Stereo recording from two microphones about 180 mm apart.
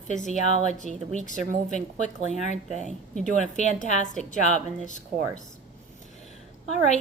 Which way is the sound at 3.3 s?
40° left (ahead or behind).